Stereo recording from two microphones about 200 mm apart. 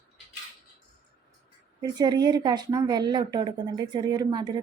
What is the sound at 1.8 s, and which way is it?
A woman's voice, 20° right (ahead or behind).